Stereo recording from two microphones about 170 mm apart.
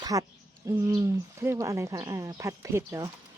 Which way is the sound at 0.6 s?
20° right (ahead or behind).